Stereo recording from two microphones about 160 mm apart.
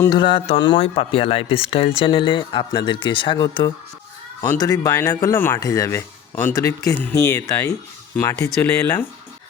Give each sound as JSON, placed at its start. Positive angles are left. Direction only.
{"t": 0.1, "sound": "speech", "side_deg": 30}